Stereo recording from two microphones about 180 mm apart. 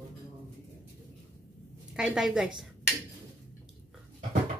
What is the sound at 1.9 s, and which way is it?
Speech, 5° right (ahead or behind).